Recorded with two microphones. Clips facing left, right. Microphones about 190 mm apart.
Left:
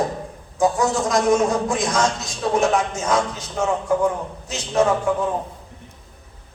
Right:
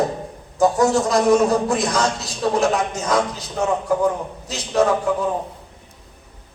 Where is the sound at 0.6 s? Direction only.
35° right (ahead or behind).